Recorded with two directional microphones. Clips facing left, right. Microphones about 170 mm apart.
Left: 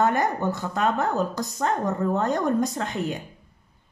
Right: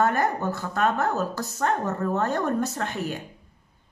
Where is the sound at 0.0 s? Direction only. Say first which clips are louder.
Left 1 dB; 20° left (ahead or behind).